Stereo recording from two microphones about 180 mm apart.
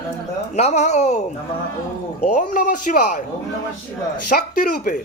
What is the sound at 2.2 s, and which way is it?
Speech, 45° left (ahead or behind).